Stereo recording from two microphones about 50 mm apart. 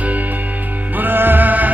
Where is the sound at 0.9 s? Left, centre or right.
Right.